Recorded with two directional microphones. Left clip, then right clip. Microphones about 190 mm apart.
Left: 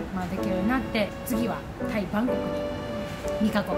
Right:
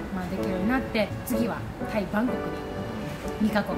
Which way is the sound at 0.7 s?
15° left (ahead or behind).